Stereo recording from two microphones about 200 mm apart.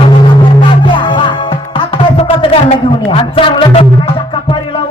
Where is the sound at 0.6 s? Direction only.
25° left (ahead or behind).